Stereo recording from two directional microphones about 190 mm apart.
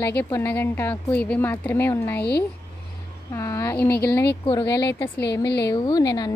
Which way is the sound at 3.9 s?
55° left (ahead or behind).